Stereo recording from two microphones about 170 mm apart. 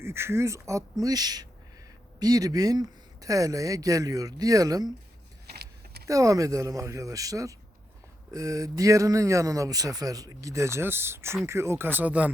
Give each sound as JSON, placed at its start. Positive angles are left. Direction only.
{"t": 0.0, "sound": "speech", "side_deg": -15}
{"t": 5.5, "sound": "vehicle", "side_deg": -70}
{"t": 6.1, "sound": "speech", "side_deg": -20}